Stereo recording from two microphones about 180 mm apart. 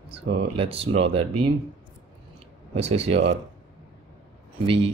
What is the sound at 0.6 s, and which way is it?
Speech, 30° right (ahead or behind).